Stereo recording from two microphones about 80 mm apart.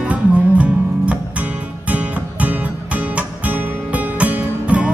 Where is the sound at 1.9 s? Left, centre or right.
Centre.